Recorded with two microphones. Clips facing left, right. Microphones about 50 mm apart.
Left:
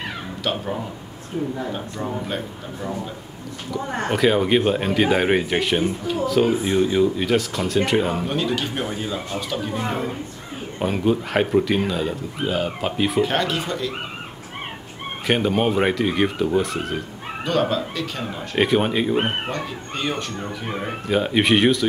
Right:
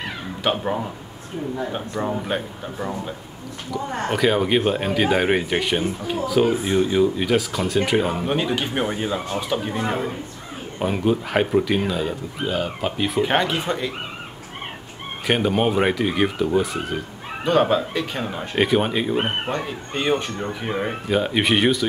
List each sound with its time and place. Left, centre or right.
0.4 s speech: right
2.2 s speech: right
4.1 s speech: centre
8.3 s speech: right; by 13.2 s centre
13.2 s speech: centre
15.2 s speech: centre
17.5 s speech: right
18.6 s speech: centre
19.5 s speech: centre
21.1 s speech: centre